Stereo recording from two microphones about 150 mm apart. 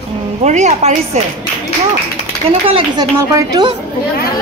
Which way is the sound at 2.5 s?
35° right (ahead or behind).